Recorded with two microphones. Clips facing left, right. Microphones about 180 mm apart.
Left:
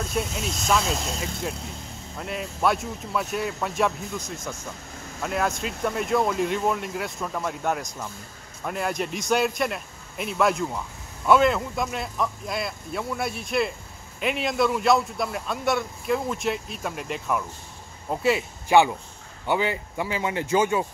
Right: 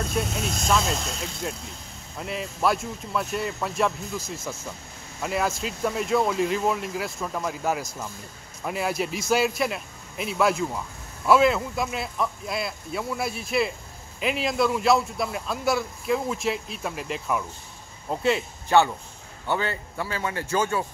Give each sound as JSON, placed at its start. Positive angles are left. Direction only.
{"t": 0.0, "sound": "a man's voice", "side_deg": 0}